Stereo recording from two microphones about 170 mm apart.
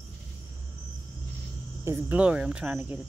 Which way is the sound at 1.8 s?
10° right (ahead or behind).